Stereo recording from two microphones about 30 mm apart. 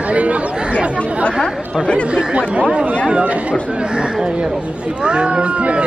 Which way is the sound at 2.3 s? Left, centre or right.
Right.